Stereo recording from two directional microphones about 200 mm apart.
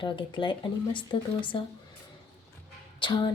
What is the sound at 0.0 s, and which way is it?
Speech, 25° left (ahead or behind).